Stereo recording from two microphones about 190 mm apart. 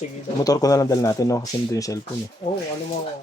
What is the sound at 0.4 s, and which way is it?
Speech, 20° left (ahead or behind).